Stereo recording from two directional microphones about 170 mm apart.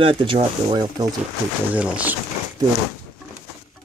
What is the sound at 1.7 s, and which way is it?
Speech, 10° right (ahead or behind).